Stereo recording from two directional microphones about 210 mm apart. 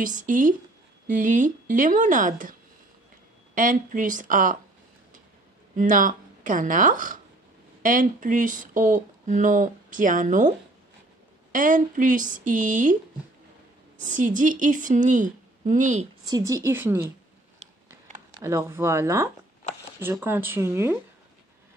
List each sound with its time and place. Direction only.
0.0 s speech: 40° right (ahead or behind)
3.5 s speech: 40° right (ahead or behind)
5.8 s a woman's voice: 40° right (ahead or behind)
11.5 s speech: 40° right (ahead or behind)
14.0 s speech: 40° right (ahead or behind)
16.3 s speech: 20° right (ahead or behind)
17.6 s a sound: 35° right (ahead or behind)
18.4 s speech: 15° right (ahead or behind)